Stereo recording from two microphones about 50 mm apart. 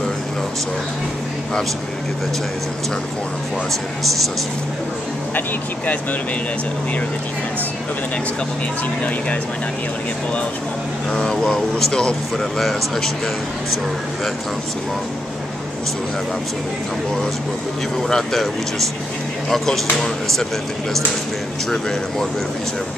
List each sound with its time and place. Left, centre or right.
11.1 s speech: centre
12.5 s speech: centre
17.9 s speech: centre